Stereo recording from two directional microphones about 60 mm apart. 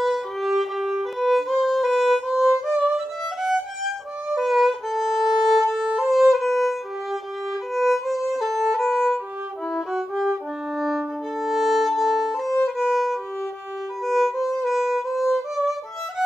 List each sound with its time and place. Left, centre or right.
0.0 s violin: centre
2.7 s violin: centre
4.3 s music: centre
14.0 s violin: centre
14.4 s music: centre